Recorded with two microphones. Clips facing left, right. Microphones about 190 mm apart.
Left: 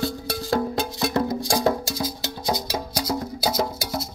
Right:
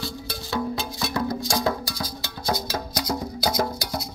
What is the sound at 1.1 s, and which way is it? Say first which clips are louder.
Music: left 2 dB; 25° left (ahead or behind).